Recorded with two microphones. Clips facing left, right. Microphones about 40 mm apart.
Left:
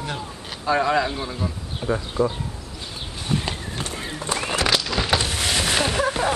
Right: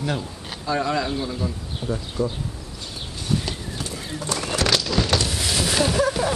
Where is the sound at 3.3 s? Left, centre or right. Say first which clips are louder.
Even; left.